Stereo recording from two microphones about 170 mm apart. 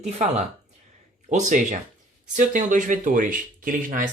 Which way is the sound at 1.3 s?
45° right (ahead or behind).